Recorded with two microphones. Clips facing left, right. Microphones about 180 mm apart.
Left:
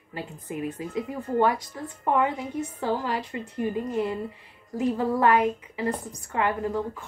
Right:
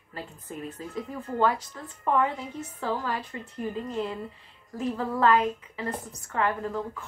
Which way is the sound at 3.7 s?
15° left (ahead or behind).